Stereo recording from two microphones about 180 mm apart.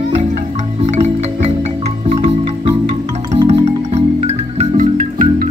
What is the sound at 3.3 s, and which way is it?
Music, 35° right (ahead or behind).